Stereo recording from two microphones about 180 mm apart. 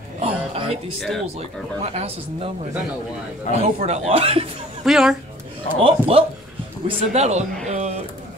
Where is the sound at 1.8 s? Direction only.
35° right (ahead or behind).